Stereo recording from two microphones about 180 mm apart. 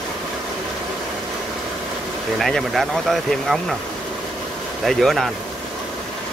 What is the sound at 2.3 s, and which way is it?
Speech, centre (ahead or behind).